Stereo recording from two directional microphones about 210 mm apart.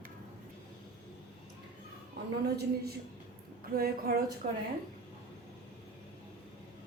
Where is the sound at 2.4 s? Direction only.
50° right (ahead or behind).